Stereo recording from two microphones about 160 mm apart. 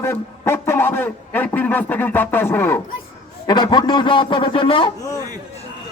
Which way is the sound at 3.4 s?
25° left (ahead or behind).